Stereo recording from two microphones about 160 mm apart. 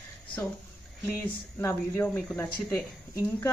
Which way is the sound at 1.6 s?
15° left (ahead or behind).